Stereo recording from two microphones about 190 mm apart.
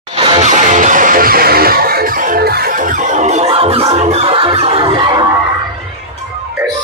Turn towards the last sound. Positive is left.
turn(degrees=-20)  # may be behind; listen again after turning